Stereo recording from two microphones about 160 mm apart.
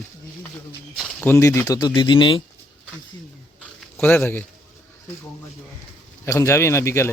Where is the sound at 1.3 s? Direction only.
15° left (ahead or behind); by 2.4 s 30° left (ahead or behind).